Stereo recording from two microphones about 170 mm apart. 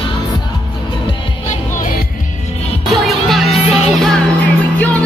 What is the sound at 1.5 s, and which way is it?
Music, 50° left (ahead or behind).